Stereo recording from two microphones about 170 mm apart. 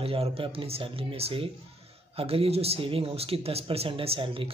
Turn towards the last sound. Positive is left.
turn(degrees=-30)  # may be behind; listen again after turning